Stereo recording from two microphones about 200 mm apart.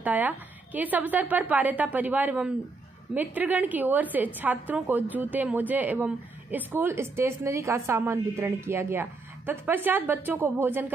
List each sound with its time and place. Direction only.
0.0 s a woman's voice: 10° right (ahead or behind)